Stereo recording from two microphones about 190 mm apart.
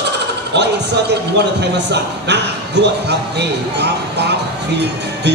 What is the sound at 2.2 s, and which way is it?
Speech, 65° right (ahead or behind).